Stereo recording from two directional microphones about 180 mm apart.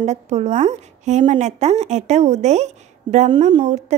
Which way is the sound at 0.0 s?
40° right (ahead or behind).